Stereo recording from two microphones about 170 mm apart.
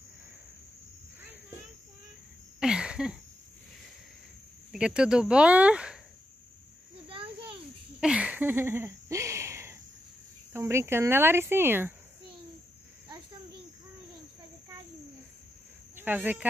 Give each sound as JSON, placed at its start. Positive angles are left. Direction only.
{"t": 2.6, "sound": "a sound", "side_deg": -5}
{"t": 4.7, "sound": "speech", "side_deg": -5}
{"t": 7.1, "sound": "insect", "side_deg": -30}
{"t": 8.0, "sound": "a sound", "side_deg": -5}
{"t": 10.5, "sound": "speech", "side_deg": -15}
{"t": 16.0, "sound": "speech", "side_deg": -10}